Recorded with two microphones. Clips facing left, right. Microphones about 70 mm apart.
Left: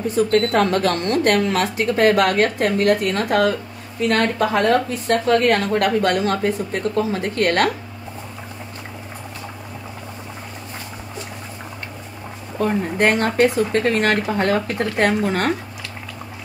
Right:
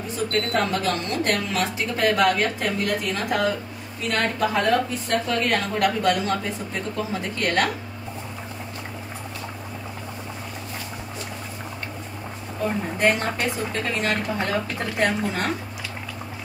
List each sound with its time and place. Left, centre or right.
0.1 s a woman's voice: left
12.9 s speech: left